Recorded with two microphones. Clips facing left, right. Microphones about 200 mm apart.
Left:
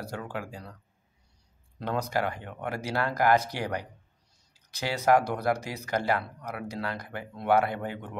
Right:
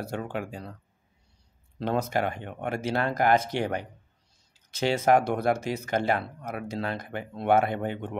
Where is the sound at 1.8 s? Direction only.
25° right (ahead or behind).